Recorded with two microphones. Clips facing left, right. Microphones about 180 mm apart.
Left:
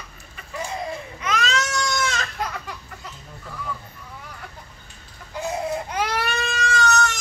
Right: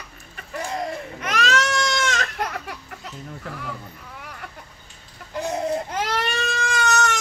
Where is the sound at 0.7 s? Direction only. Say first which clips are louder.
Right 4 dB; 55° right (ahead or behind).